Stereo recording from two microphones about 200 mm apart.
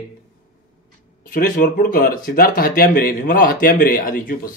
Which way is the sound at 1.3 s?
45° left (ahead or behind).